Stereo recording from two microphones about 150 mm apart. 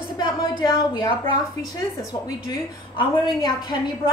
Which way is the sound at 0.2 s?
30° left (ahead or behind).